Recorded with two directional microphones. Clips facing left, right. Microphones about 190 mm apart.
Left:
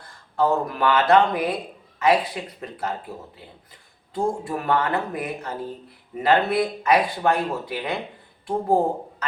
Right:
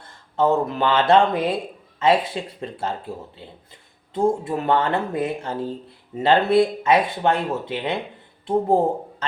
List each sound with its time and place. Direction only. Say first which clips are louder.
0.0 s speech: right 2 dB; 25° right (ahead or behind)
4.1 s speech: right 4 dB; 25° right (ahead or behind)